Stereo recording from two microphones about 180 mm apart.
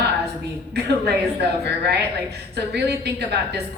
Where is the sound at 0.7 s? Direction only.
65° right (ahead or behind).